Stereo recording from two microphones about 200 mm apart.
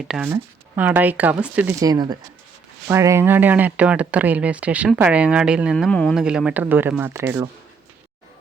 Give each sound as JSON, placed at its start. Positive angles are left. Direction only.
{"t": 0.1, "sound": "speech", "side_deg": -10}
{"t": 1.8, "sound": "speech", "side_deg": -20}